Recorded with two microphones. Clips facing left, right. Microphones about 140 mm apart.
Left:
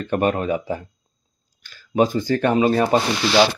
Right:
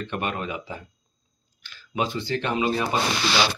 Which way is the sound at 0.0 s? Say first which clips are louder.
Left 9 dB; 40° left (ahead or behind).